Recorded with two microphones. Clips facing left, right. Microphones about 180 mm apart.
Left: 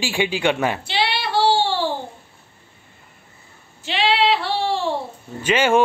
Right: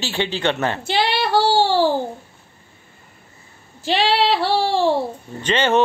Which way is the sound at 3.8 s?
40° right (ahead or behind).